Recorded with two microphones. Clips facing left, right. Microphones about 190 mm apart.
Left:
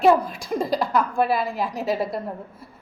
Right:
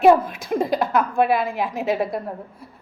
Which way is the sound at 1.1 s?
20° right (ahead or behind).